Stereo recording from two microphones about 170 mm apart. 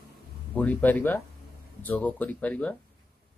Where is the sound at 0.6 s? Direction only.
10° left (ahead or behind).